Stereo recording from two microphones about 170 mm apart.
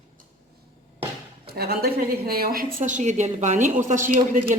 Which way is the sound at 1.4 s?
65° right (ahead or behind).